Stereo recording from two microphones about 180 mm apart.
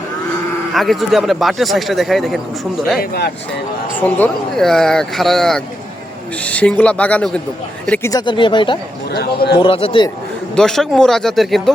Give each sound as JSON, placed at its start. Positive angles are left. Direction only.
{"t": 0.7, "sound": "speech", "side_deg": 0}
{"t": 3.0, "sound": "speech", "side_deg": 65}
{"t": 3.9, "sound": "speech", "side_deg": 10}
{"t": 8.1, "sound": "speech", "side_deg": 25}
{"t": 9.1, "sound": "speech", "side_deg": 65}
{"t": 9.6, "sound": "speech", "side_deg": 30}
{"t": 10.5, "sound": "speech", "side_deg": 5}